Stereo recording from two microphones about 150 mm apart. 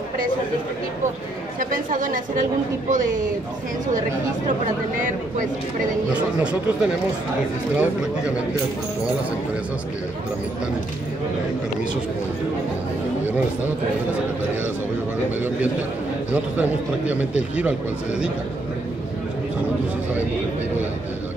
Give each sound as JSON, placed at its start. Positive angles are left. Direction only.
{"t": 1.6, "sound": "a woman's voice", "side_deg": -60}
{"t": 6.4, "sound": "a man's voice", "side_deg": -5}
{"t": 15.3, "sound": "a man's voice", "side_deg": -10}